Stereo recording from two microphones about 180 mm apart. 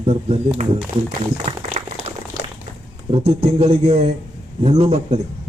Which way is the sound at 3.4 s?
35° right (ahead or behind).